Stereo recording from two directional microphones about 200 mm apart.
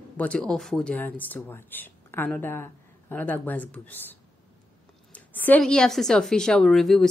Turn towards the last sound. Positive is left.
turn(degrees=0)  # may be behind; listen again after turning